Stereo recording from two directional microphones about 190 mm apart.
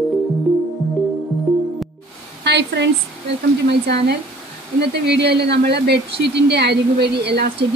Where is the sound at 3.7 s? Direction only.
60° right (ahead or behind).